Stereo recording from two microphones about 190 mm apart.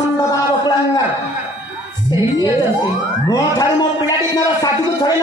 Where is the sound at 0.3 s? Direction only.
20° left (ahead or behind).